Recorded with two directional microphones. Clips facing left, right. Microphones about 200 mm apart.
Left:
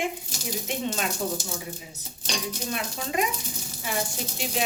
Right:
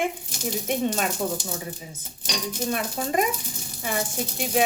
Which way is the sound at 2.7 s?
50° right (ahead or behind).